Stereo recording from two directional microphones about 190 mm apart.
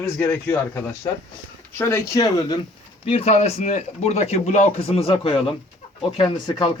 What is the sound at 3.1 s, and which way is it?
Speech, 30° left (ahead or behind).